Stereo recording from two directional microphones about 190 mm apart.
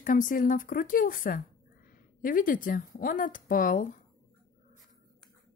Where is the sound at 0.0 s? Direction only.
45° left (ahead or behind).